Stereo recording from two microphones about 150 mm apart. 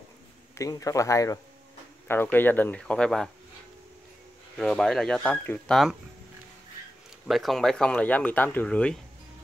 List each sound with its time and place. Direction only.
0.6 s speech: 20° left (ahead or behind); by 3.3 s 5° left (ahead or behind)
4.6 s speech: 5° left (ahead or behind)
7.2 s speech: centre (ahead or behind)